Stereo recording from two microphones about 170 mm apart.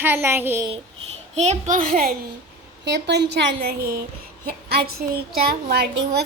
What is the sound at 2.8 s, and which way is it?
A woman's voice, 90° right.